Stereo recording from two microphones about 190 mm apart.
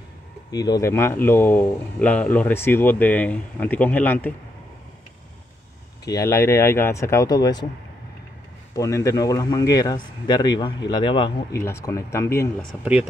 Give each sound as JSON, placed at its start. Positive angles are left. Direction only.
{"t": 0.5, "sound": "speech", "side_deg": 20}
{"t": 6.0, "sound": "speech", "side_deg": 15}
{"t": 8.7, "sound": "speech", "side_deg": 15}
{"t": 11.5, "sound": "speech", "side_deg": 15}